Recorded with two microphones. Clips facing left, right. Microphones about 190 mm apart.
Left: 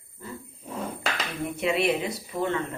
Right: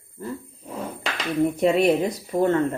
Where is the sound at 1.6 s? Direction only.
45° right (ahead or behind).